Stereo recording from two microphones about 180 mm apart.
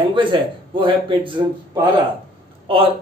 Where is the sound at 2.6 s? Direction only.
30° right (ahead or behind).